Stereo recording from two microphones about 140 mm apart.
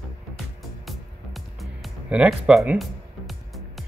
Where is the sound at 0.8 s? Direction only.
Centre (ahead or behind).